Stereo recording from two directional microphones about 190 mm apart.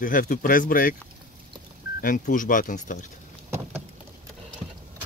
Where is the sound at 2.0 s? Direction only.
45° left (ahead or behind).